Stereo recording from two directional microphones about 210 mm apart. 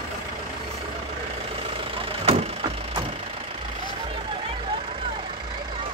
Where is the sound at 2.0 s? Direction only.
30° right (ahead or behind).